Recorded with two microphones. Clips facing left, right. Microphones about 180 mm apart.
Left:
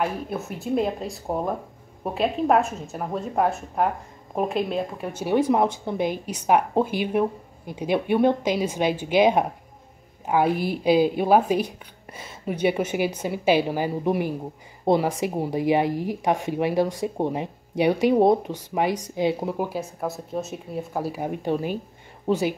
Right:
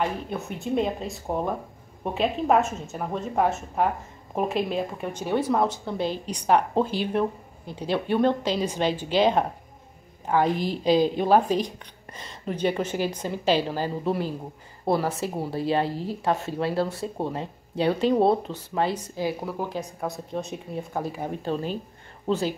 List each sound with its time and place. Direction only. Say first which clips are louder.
0.0 s a woman's voice: left 1 dB; 5° left (ahead or behind)
20.0 s speech: left 2 dB; 5° left (ahead or behind)